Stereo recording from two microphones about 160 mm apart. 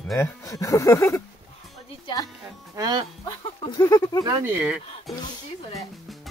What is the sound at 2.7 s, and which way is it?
Speech, 25° right (ahead or behind).